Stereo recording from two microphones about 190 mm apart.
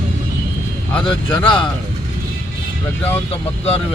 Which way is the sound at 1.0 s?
25° left (ahead or behind).